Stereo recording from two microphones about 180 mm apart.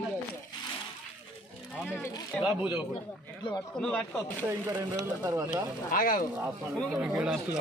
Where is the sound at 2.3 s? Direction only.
5° right (ahead or behind).